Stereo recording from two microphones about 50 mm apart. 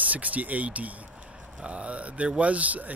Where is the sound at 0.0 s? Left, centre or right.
Right.